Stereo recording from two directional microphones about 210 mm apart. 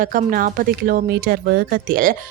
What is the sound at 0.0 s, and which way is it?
Speech, 40° right (ahead or behind).